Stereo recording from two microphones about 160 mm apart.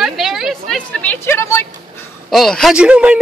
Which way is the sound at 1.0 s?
10° left (ahead or behind).